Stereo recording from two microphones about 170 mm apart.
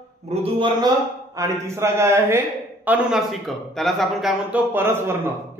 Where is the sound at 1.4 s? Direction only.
15° right (ahead or behind).